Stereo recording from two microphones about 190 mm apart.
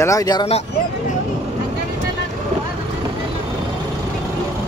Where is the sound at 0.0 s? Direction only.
15° left (ahead or behind).